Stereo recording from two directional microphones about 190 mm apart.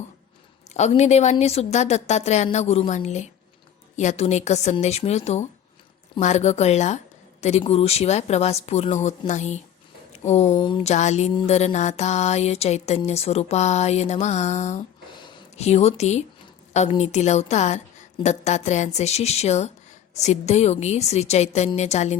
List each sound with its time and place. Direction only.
0.7 s speech: 35° left (ahead or behind)
10.1 s a sound: 35° left (ahead or behind)
10.5 s speech: 25° left (ahead or behind)